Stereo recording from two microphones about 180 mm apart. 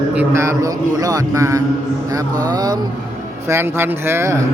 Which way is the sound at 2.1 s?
20° right (ahead or behind).